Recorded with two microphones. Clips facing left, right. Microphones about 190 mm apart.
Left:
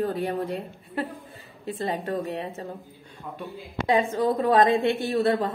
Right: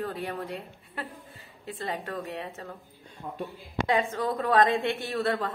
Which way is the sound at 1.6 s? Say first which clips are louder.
Left 6 dB; 30° left (ahead or behind).